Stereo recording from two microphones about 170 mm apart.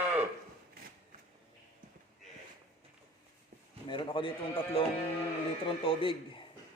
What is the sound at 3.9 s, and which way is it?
A man's voice, 30° left (ahead or behind).